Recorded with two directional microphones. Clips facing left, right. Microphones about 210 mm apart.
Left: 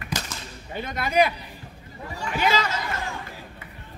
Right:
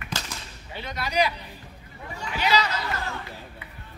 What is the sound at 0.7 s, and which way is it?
Speech, 50° left (ahead or behind).